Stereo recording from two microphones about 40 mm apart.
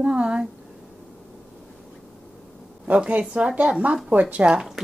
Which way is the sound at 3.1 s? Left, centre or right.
Right.